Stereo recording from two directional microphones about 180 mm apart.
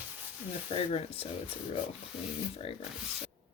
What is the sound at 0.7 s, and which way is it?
Speech, 35° left (ahead or behind).